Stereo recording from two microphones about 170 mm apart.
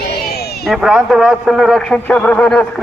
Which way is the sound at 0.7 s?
5° right (ahead or behind).